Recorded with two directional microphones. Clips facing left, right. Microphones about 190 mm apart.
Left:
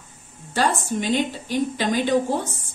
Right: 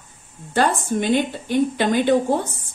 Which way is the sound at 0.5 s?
55° right (ahead or behind).